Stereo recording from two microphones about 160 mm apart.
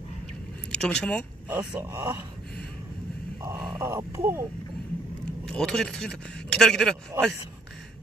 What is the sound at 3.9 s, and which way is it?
Speech, 20° right (ahead or behind).